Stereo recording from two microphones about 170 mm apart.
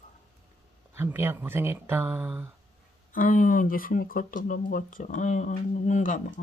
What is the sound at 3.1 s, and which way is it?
Speech, 55° left (ahead or behind).